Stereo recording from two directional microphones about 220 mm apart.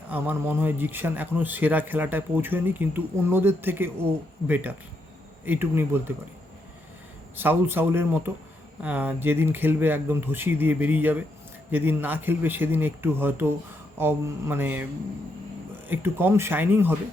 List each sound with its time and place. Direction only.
0.1 s speech: 10° right (ahead or behind)
7.3 s speech: 10° right (ahead or behind)
15.9 s speech: 10° right (ahead or behind)